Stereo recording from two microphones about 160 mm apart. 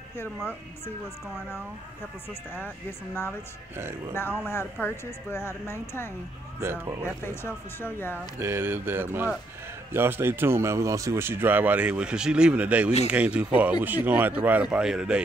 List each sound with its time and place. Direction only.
4.5 s speech: 15° left (ahead or behind)
6.6 s speech: 15° right (ahead or behind)
7.2 s speech: 15° left (ahead or behind)
8.4 s speech: 15° right (ahead or behind)